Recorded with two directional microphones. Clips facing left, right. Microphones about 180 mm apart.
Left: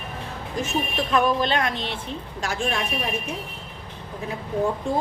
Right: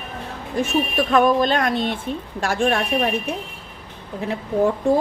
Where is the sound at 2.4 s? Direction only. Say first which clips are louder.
Right 6 dB; 55° right (ahead or behind).